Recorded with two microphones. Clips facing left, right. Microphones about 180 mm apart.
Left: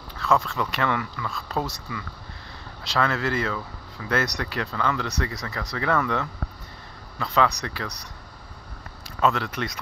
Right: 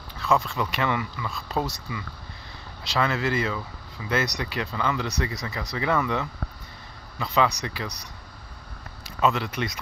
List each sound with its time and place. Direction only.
0.3 s speech: 10° right (ahead or behind)
9.2 s speech: 10° right (ahead or behind)